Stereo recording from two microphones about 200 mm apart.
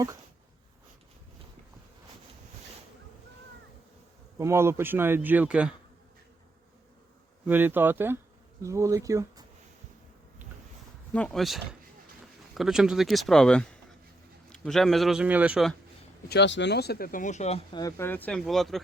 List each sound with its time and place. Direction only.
4.4 s a man's voice: 15° right (ahead or behind)
7.4 s a man's voice: 10° right (ahead or behind)
11.1 s speech: 5° left (ahead or behind)
16.3 s speech: 60° left (ahead or behind); by 17.7 s 30° left (ahead or behind)
17.7 s speech: 15° left (ahead or behind)